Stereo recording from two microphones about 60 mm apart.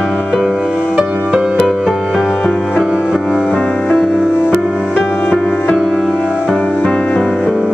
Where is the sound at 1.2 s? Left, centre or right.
Centre.